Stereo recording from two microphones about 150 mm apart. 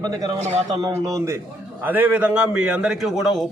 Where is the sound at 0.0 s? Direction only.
25° right (ahead or behind).